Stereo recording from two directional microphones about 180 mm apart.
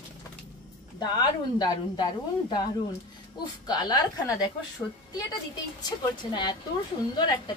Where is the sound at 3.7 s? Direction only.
20° left (ahead or behind).